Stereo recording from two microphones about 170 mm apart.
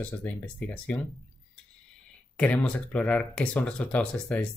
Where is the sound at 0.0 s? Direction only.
10° left (ahead or behind).